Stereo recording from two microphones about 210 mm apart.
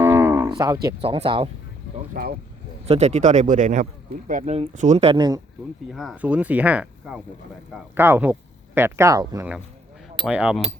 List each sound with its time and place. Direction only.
0.0 s cattle: 10° right (ahead or behind)
1.0 s speech: 25° right (ahead or behind)
2.2 s speech: 40° right (ahead or behind)
2.8 s speech: 30° right (ahead or behind)
5.9 s speech: centre (ahead or behind)